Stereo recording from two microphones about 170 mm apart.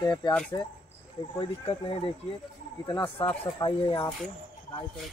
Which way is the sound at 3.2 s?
30° left (ahead or behind).